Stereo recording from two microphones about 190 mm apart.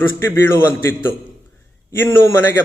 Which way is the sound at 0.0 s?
10° left (ahead or behind).